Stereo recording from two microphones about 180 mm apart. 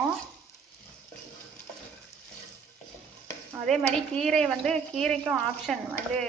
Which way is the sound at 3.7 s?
5° left (ahead or behind).